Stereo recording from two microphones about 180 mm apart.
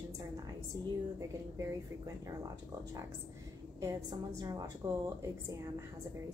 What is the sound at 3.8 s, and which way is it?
A woman's voice, 20° right (ahead or behind).